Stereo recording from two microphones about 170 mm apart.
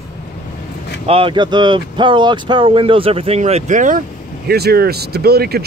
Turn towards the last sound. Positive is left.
turn(degrees=-70)  # may be behind; listen again after turning